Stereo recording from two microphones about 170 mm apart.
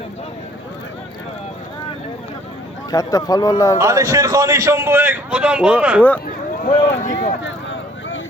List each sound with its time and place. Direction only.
2.9 s a man's voice: 20° left (ahead or behind)
3.8 s a man's voice: 20° right (ahead or behind)
6.7 s speech: 50° left (ahead or behind)
7.4 s vehicle: 90° left